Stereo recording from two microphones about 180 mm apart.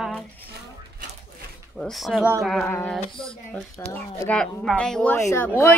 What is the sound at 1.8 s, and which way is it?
Speech, centre (ahead or behind).